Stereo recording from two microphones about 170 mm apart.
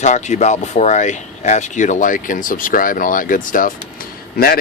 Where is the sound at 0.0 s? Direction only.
45° left (ahead or behind).